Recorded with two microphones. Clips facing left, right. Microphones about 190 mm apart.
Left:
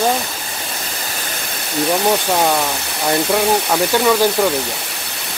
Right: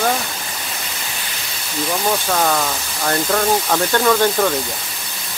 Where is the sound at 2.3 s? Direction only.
15° left (ahead or behind).